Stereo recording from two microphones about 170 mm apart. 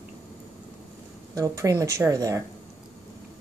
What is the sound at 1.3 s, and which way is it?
Speech, 20° right (ahead or behind).